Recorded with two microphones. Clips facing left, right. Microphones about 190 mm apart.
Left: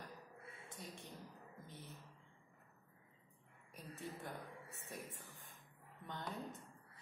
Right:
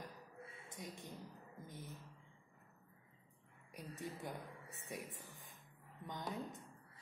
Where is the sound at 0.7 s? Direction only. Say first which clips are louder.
Right 2 dB; 15° right (ahead or behind).